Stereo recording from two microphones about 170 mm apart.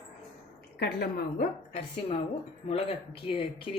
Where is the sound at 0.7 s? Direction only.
65° left (ahead or behind).